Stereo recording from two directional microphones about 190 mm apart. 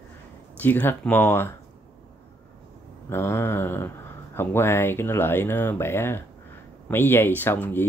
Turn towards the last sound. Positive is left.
turn(degrees=10)  # may be behind; listen again after turning